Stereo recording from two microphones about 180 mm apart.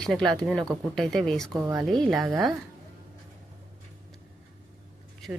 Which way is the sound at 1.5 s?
15° right (ahead or behind).